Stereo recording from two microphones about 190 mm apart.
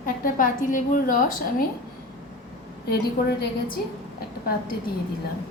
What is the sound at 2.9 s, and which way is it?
Speech, 60° left (ahead or behind).